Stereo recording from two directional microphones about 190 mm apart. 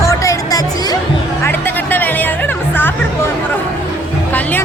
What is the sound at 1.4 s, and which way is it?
Music, 10° left (ahead or behind).